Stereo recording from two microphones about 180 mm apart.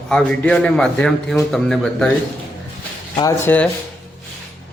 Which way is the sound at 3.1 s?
15° left (ahead or behind).